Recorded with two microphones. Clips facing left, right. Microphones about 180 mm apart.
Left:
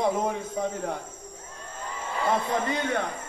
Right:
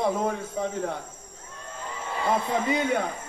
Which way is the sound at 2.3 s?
10° right (ahead or behind).